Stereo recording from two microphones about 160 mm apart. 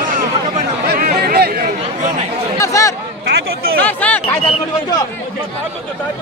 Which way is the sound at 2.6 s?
20° left (ahead or behind).